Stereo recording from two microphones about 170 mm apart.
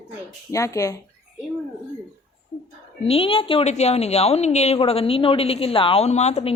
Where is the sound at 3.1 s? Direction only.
30° left (ahead or behind).